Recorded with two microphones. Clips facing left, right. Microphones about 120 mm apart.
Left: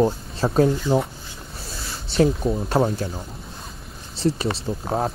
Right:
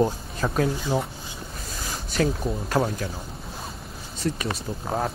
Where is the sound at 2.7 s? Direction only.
30° left (ahead or behind).